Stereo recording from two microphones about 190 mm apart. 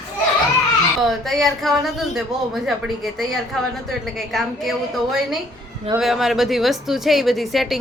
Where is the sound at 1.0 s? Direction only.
Centre (ahead or behind).